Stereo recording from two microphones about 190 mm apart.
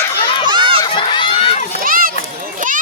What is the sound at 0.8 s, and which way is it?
Crowd, 25° left (ahead or behind).